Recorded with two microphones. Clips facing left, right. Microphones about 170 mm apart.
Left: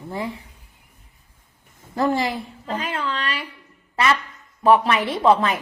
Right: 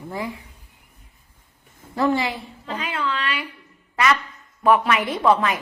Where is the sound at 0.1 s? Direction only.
30° left (ahead or behind).